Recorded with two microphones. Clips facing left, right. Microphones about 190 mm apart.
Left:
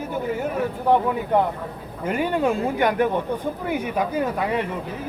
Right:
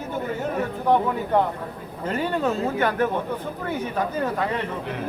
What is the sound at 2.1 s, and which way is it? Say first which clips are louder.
Speech: left 2 dB; 15° left (ahead or behind).